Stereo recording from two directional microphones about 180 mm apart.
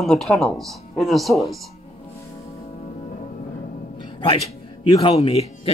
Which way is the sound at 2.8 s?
40° left (ahead or behind).